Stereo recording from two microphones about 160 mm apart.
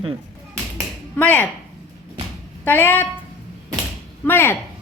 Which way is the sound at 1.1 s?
10° left (ahead or behind).